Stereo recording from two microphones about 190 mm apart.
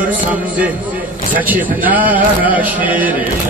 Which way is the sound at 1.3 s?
10° right (ahead or behind).